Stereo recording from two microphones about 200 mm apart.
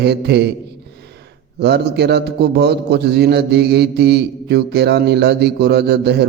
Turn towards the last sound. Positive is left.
turn(degrees=-55)  # may be behind; listen again after turning